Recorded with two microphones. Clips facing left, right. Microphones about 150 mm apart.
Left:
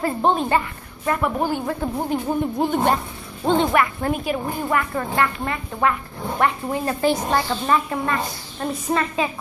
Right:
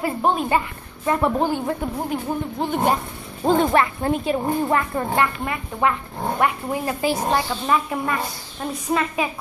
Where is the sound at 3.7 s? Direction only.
25° right (ahead or behind).